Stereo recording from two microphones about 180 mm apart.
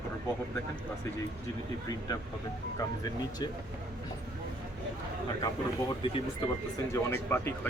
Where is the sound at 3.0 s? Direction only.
20° left (ahead or behind).